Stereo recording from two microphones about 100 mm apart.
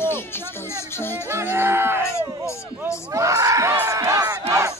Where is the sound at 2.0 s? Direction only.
30° left (ahead or behind).